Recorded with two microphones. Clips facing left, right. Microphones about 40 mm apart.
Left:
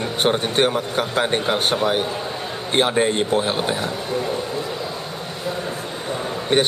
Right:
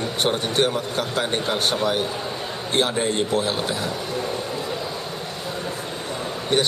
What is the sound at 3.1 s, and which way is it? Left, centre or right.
Speech, centre.